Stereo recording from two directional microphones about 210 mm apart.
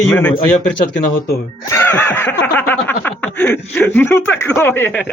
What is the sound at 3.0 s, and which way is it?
Speech, 5° left (ahead or behind).